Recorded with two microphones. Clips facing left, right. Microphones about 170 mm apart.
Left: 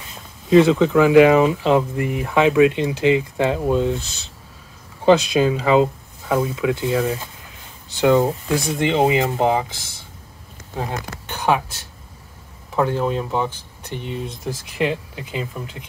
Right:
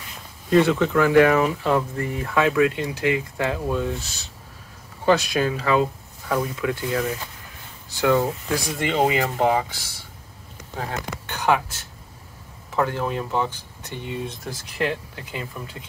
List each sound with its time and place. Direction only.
0.6 s speech: 15° left (ahead or behind)
5.0 s speech: 20° left (ahead or behind)
12.7 s speech: 15° left (ahead or behind)
14.0 s speech: 15° right (ahead or behind)
14.4 s speech: 20° left (ahead or behind)